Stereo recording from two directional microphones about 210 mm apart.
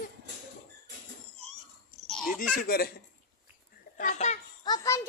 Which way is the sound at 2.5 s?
45° left (ahead or behind).